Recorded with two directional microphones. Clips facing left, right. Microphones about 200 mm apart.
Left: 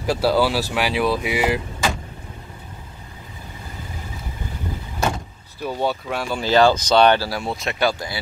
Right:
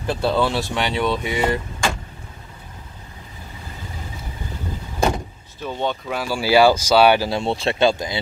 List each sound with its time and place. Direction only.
0.0 s speech: 5° left (ahead or behind)
5.6 s speech: 10° left (ahead or behind); by 7.2 s 10° right (ahead or behind)
7.2 s speech: 25° right (ahead or behind)